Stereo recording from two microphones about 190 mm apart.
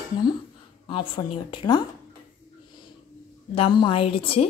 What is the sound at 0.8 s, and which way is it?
Speech, 25° left (ahead or behind).